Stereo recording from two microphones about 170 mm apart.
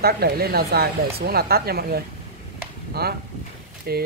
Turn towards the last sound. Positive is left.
turn(degrees=-65)  # may be behind; listen again after turning